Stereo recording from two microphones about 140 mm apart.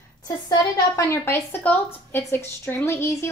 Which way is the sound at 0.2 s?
25° left (ahead or behind).